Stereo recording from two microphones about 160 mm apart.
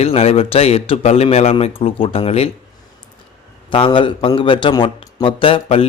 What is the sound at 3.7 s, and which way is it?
Speech, 30° left (ahead or behind).